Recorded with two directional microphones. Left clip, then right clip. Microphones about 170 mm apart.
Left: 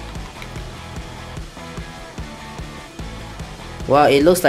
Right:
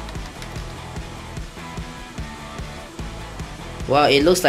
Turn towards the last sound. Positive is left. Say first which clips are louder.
# left 2 dB
turn(degrees=20)  # may be behind; listen again after turning